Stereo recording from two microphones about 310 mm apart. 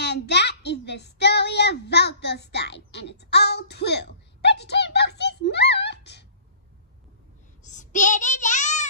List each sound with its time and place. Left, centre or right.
0.0 s child singing: left
7.6 s child singing: left